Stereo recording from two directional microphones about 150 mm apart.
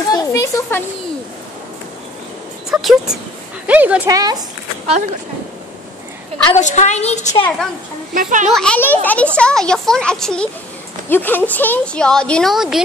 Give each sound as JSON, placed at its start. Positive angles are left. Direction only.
{"t": 0.1, "sound": "speech", "side_deg": 20}
{"t": 2.7, "sound": "speech", "side_deg": -5}
{"t": 4.1, "sound": "speech", "side_deg": -25}
{"t": 4.8, "sound": "speech", "side_deg": -45}
{"t": 6.5, "sound": "a woman's voice", "side_deg": 55}
{"t": 8.1, "sound": "speech", "side_deg": -60}
{"t": 8.5, "sound": "speech", "side_deg": 5}